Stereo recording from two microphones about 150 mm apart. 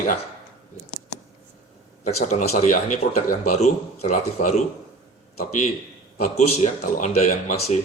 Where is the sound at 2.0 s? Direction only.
50° left (ahead or behind).